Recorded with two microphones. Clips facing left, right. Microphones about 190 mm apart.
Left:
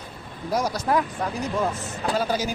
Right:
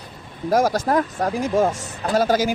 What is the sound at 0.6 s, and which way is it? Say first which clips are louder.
Speech: right 8 dB; 90° right.